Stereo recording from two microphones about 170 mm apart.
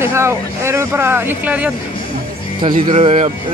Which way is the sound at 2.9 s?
35° right (ahead or behind).